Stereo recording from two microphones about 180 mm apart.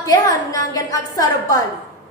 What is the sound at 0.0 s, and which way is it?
A woman's voice, 20° left (ahead or behind).